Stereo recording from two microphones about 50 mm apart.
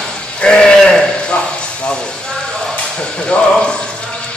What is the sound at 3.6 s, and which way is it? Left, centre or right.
Speech, centre.